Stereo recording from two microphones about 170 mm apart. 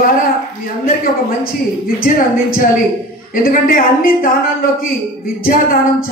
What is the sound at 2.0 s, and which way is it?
Speech, 60° left (ahead or behind).